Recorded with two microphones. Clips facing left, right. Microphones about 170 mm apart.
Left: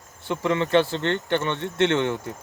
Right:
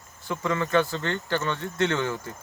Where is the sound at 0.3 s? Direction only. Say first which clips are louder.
Left 4 dB; 25° left (ahead or behind).